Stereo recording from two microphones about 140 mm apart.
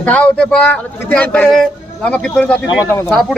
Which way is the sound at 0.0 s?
10° left (ahead or behind).